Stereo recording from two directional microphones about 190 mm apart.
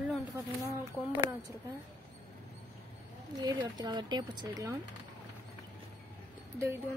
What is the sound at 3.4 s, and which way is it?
A woman's voice, 20° right (ahead or behind).